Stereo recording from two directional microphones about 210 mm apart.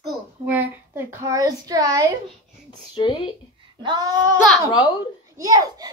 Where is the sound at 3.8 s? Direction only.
20° right (ahead or behind).